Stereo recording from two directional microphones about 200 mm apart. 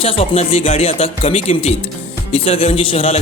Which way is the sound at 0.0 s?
30° left (ahead or behind).